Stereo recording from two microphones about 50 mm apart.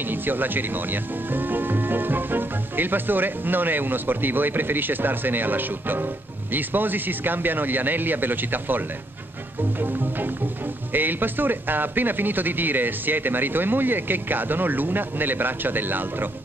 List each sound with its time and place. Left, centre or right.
0.1 s speech: right
9.8 s music: right
10.9 s speech: right